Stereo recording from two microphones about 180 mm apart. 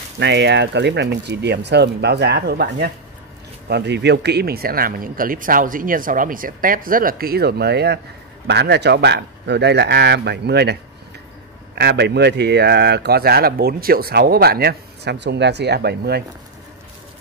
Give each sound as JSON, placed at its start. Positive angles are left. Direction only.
{"t": 0.2, "sound": "speech", "side_deg": -75}